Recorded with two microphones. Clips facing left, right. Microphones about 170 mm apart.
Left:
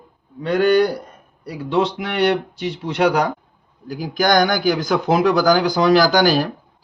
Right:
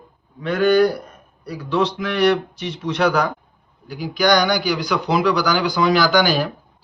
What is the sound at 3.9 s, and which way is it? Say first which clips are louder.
A man's voice: even; 45° left (ahead or behind).